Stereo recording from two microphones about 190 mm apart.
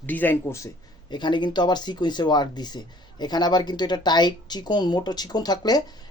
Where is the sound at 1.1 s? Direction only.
25° left (ahead or behind).